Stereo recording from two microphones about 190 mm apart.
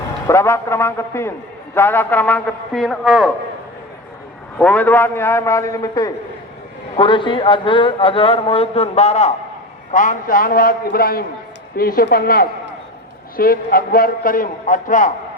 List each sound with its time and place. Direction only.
0.3 s a man's voice: 15° left (ahead or behind); by 3.3 s centre (ahead or behind)
4.5 s a man's voice: 5° left (ahead or behind); by 15.1 s 45° left (ahead or behind)